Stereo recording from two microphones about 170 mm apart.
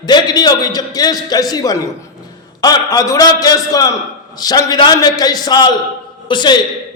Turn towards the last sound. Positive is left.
turn(degrees=25)  # may be behind; listen again after turning